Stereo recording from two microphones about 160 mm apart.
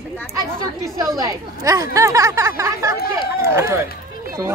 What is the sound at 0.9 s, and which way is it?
A woman's voice, 20° right (ahead or behind).